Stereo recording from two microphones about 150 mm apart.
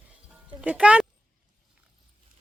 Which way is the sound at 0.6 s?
5° right (ahead or behind).